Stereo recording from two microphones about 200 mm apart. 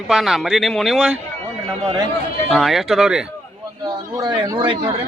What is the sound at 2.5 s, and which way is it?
Speech, centre (ahead or behind).